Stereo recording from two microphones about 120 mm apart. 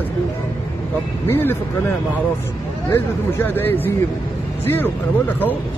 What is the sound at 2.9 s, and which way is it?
Speech, 20° left (ahead or behind).